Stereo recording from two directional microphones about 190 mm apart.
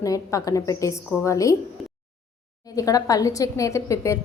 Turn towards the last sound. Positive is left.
turn(degrees=15)  # may be behind; listen again after turning